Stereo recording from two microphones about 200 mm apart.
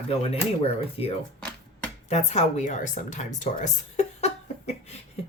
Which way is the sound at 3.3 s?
35° left (ahead or behind).